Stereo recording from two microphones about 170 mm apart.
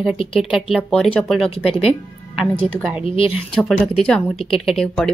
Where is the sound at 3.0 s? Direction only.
35° left (ahead or behind).